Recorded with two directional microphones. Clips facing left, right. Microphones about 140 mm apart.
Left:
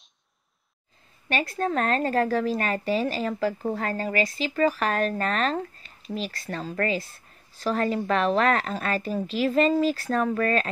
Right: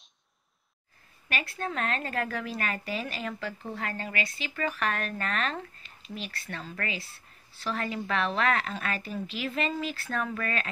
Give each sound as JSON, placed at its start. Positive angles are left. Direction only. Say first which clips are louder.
{"t": 1.3, "sound": "speech", "louder": "left 8 dB", "side_deg": 40}